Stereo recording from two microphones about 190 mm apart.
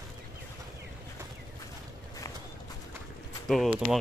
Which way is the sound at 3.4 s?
Centre (ahead or behind).